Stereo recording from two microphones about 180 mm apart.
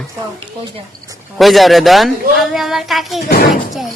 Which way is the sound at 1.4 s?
Centre (ahead or behind).